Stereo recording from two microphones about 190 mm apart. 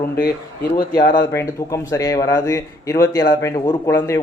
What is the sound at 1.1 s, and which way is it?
Speech, 15° left (ahead or behind).